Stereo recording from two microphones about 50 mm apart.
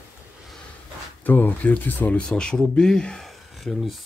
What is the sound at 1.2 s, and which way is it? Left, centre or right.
Speech, left.